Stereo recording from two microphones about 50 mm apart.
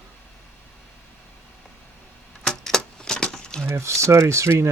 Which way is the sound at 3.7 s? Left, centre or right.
Right.